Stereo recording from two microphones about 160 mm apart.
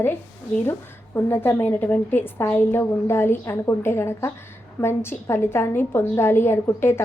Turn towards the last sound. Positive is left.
turn(degrees=15)  # may be behind; listen again after turning